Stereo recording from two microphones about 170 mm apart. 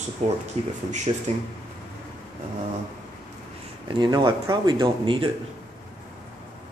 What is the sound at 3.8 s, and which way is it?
Speech, 25° right (ahead or behind).